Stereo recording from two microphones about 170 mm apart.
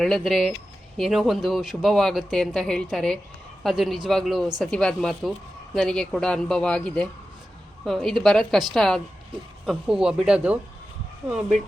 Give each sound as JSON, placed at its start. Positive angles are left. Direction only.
{"t": 0.0, "sound": "speech", "side_deg": 0}